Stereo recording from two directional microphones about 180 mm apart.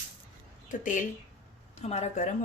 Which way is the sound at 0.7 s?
45° left (ahead or behind).